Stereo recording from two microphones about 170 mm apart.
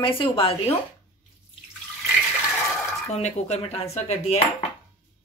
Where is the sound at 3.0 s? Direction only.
40° left (ahead or behind).